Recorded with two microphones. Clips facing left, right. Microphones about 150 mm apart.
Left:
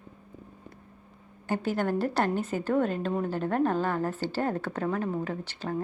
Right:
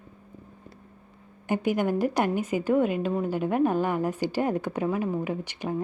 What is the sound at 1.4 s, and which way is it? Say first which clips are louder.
A woman's voice: right 3 dB; 15° right (ahead or behind).